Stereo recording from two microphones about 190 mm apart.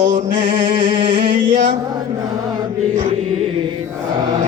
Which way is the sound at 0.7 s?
30° right (ahead or behind).